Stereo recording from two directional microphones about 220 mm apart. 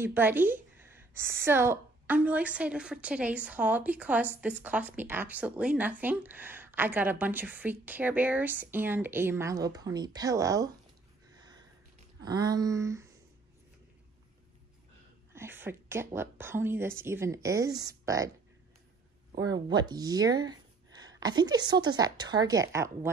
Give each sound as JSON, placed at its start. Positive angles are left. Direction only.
{"t": 0.0, "sound": "a woman's voice", "side_deg": -10}
{"t": 11.3, "sound": "a sound", "side_deg": -15}
{"t": 12.2, "sound": "a woman's voice", "side_deg": -15}
{"t": 15.3, "sound": "a woman's voice", "side_deg": -10}
{"t": 19.3, "sound": "a woman's voice", "side_deg": -20}